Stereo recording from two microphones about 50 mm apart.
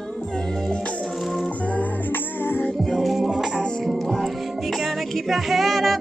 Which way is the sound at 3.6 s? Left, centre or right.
Centre.